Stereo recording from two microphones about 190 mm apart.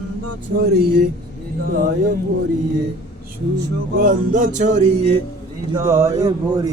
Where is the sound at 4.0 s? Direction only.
45° right (ahead or behind).